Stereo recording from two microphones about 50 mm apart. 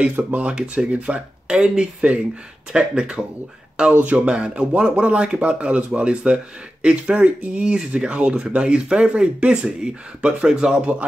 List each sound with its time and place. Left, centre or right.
0.1 s speech: right
0.5 s speech: right
4.0 s speech: right